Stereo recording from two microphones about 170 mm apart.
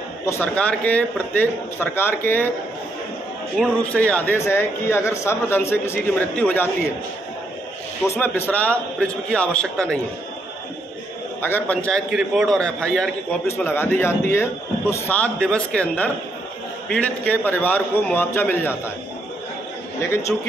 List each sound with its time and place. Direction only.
0.3 s speech: 10° left (ahead or behind)
3.5 s speech: 5° left (ahead or behind)
8.2 s speech: 10° left (ahead or behind)
11.4 s speech: 10° left (ahead or behind)
12.1 s a man's voice: centre (ahead or behind)
20.0 s speech: 15° left (ahead or behind)